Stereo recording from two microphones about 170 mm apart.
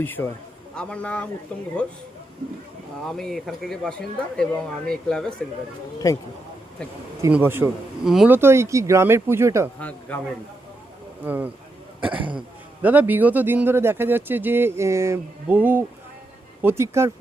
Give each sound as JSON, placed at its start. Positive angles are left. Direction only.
{"t": 0.0, "sound": "a man's voice", "side_deg": 10}
{"t": 3.1, "sound": "speech", "side_deg": 0}
{"t": 6.0, "sound": "speech", "side_deg": 20}
{"t": 7.2, "sound": "speech", "side_deg": -10}
{"t": 11.2, "sound": "speech", "side_deg": -10}